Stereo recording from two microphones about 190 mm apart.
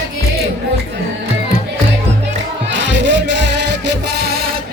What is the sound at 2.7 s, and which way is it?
Music, 70° right (ahead or behind).